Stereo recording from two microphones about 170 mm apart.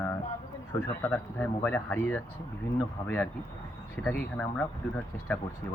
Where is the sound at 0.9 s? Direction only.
10° left (ahead or behind).